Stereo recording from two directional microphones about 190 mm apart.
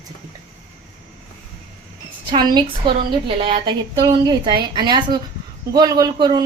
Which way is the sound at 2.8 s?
25° right (ahead or behind).